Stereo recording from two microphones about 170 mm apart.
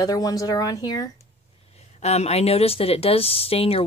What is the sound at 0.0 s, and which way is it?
Speech, 20° left (ahead or behind).